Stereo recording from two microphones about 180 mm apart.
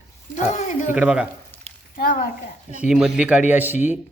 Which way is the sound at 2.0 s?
50° left (ahead or behind).